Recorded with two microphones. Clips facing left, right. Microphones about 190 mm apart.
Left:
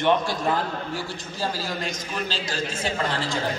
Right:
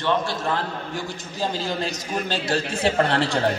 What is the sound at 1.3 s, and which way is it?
Speech, 25° right (ahead or behind).